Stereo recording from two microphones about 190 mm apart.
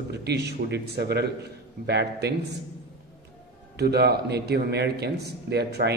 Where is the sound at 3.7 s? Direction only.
60° right (ahead or behind).